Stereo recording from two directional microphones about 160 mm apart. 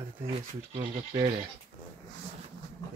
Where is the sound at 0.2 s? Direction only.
35° right (ahead or behind).